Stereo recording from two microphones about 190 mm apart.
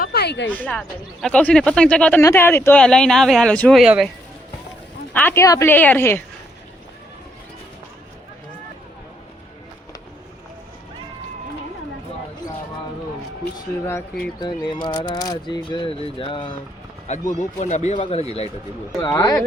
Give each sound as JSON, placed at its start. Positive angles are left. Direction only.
{"t": 0.0, "sound": "a sound", "side_deg": 55}
{"t": 0.4, "sound": "speech", "side_deg": 10}
{"t": 5.1, "sound": "speech", "side_deg": 10}
{"t": 13.8, "sound": "speech", "side_deg": 10}
{"t": 14.7, "sound": "speech", "side_deg": 25}
{"t": 17.1, "sound": "speech", "side_deg": 35}
{"t": 18.9, "sound": "speech", "side_deg": 20}